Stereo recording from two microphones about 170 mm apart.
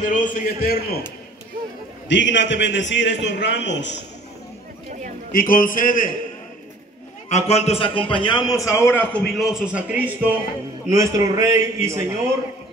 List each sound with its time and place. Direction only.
0.0 s a man's voice: 50° left (ahead or behind)
2.0 s a man's voice: 90° left
5.3 s a man's voice: 55° left (ahead or behind)
7.2 s a man's voice: 40° left (ahead or behind); by 12.2 s 15° right (ahead or behind)